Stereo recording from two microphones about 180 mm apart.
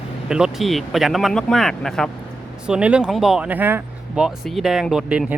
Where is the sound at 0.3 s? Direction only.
5° right (ahead or behind).